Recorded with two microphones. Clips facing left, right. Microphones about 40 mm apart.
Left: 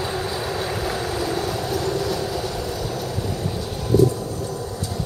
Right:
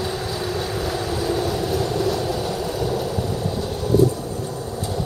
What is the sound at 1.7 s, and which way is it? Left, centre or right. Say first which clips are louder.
Train: even; centre.